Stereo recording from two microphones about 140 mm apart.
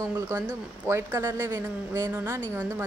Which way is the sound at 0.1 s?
15° right (ahead or behind).